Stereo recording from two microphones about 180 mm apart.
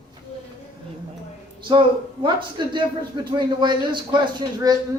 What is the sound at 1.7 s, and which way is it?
A man's voice, 25° right (ahead or behind).